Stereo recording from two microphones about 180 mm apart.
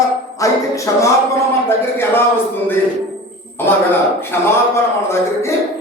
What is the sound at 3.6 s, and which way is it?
Speech, 10° left (ahead or behind).